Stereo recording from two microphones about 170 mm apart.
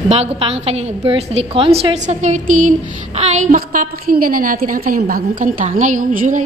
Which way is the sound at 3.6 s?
55° right (ahead or behind).